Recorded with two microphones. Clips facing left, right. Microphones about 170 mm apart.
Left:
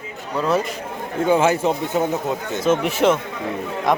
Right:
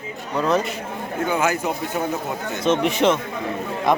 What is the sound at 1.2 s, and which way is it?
Speech, 30° left (ahead or behind).